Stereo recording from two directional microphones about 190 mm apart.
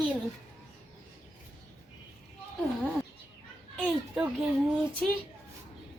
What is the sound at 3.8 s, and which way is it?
Speech, 5° right (ahead or behind).